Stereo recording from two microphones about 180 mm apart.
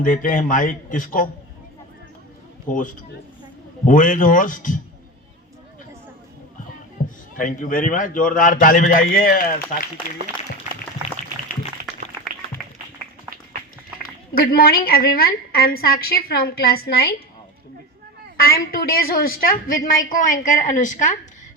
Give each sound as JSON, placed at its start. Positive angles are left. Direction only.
{"t": 0.0, "sound": "a woman's voice", "side_deg": 45}
{"t": 2.6, "sound": "a woman's voice", "side_deg": 45}
{"t": 7.3, "sound": "a woman's voice", "side_deg": 50}
{"t": 12.2, "sound": "music", "side_deg": -10}
{"t": 14.3, "sound": "a woman's voice", "side_deg": 60}
{"t": 18.4, "sound": "a woman's voice", "side_deg": 55}